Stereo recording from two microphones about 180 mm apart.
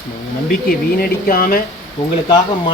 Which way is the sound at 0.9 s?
55° left (ahead or behind).